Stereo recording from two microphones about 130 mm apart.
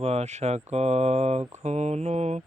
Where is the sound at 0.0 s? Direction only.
55° right (ahead or behind).